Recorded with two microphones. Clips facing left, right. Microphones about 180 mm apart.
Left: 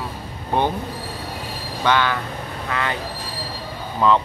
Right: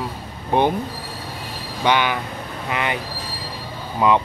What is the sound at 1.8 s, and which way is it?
Speech, 15° right (ahead or behind).